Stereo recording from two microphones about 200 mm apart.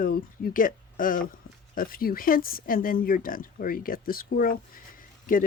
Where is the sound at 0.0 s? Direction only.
45° left (ahead or behind).